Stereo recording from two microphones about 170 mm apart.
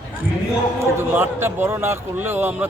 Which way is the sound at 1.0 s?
15° right (ahead or behind).